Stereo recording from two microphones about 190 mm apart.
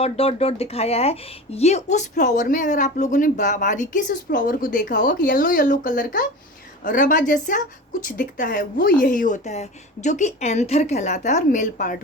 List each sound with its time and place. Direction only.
0.0 s a woman's voice: 30° left (ahead or behind)